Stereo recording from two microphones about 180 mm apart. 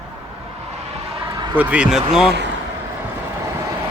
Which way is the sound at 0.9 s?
25° right (ahead or behind).